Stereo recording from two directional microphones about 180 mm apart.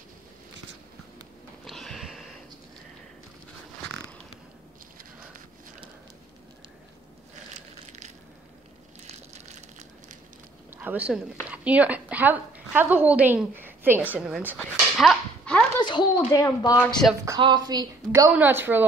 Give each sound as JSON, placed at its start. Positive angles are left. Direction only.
{"t": 1.6, "sound": "a sound", "side_deg": 0}
{"t": 7.7, "sound": "crushing", "side_deg": -40}
{"t": 10.7, "sound": "a woman's voice", "side_deg": -10}
{"t": 14.6, "sound": "dog", "side_deg": 5}
{"t": 15.8, "sound": "speech", "side_deg": 25}
{"t": 17.2, "sound": "a woman's voice", "side_deg": -20}
{"t": 18.3, "sound": "a woman's voice", "side_deg": -10}